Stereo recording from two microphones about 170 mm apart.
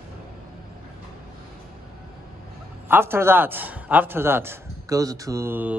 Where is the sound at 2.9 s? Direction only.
15° right (ahead or behind).